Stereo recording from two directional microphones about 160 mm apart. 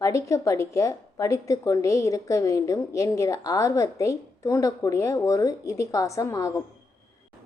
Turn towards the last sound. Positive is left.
turn(degrees=20)  # may be behind; listen again after turning